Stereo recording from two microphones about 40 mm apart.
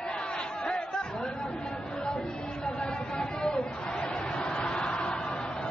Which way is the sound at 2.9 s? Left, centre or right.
Centre.